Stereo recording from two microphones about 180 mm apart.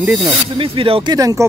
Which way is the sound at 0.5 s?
30° right (ahead or behind).